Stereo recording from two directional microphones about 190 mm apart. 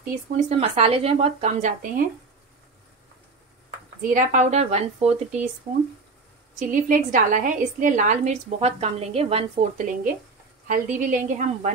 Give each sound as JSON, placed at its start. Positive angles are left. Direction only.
{"t": 0.0, "sound": "a woman's voice", "side_deg": -35}
{"t": 4.0, "sound": "a woman's voice", "side_deg": -45}
{"t": 6.6, "sound": "a woman's voice", "side_deg": -45}
{"t": 10.7, "sound": "a woman's voice", "side_deg": -45}